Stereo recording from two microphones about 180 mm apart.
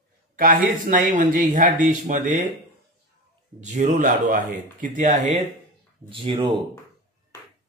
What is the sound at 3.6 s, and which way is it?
Speech, 40° right (ahead or behind).